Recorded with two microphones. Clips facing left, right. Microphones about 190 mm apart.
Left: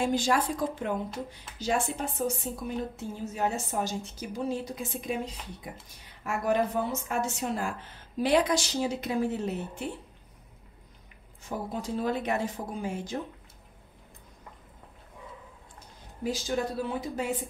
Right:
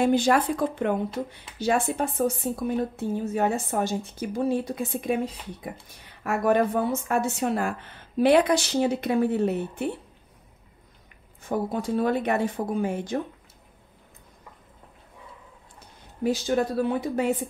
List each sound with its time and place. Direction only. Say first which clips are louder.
0.0 s a woman's voice: right 6 dB; 60° right (ahead or behind)
11.4 s a woman's voice: right 7 dB; 60° right (ahead or behind)
16.3 s a woman's voice: right 6 dB; 60° right (ahead or behind)